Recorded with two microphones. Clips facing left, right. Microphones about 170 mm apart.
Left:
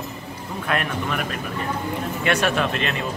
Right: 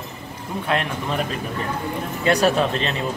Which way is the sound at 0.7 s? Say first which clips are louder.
Right 1 dB; 30° right (ahead or behind).